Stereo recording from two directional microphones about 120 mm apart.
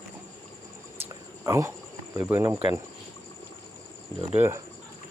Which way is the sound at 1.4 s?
25° right (ahead or behind).